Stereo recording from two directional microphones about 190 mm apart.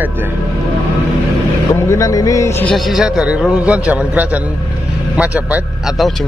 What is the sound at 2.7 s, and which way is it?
A man's voice, centre (ahead or behind).